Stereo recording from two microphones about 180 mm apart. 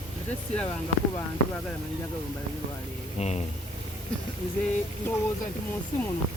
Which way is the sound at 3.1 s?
40° left (ahead or behind).